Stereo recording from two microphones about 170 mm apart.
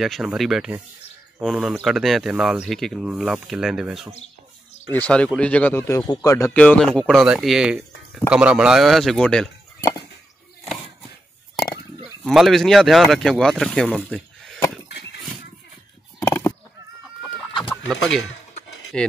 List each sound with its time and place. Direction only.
0.0 s speech: centre (ahead or behind)
4.9 s speech: 10° left (ahead or behind)
9.8 s chop: 20° left (ahead or behind)
12.2 s speech: centre (ahead or behind)
16.2 s honk: 20° left (ahead or behind)
18.9 s speech: 5° left (ahead or behind)